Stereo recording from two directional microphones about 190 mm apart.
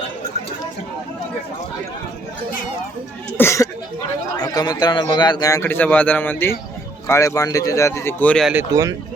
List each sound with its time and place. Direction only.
3.3 s a man's voice: 15° left (ahead or behind)
8.5 s speech: 15° right (ahead or behind)